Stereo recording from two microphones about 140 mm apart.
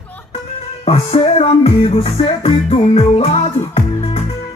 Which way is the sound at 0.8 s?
45° left (ahead or behind).